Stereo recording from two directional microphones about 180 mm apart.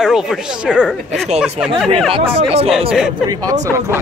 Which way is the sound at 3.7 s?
15° right (ahead or behind).